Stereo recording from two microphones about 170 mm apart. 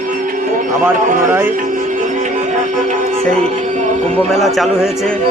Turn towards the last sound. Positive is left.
turn(degrees=5)  # may be behind; listen again after turning